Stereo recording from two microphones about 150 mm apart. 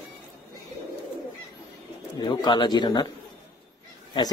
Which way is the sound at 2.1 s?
30° left (ahead or behind).